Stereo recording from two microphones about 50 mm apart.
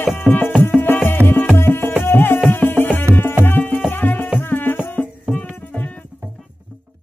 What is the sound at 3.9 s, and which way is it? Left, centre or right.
Music, left.